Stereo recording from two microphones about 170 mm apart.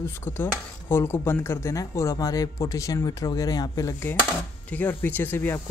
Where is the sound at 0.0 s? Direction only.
15° left (ahead or behind).